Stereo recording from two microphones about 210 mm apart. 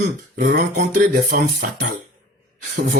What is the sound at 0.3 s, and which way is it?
Speech, 45° right (ahead or behind).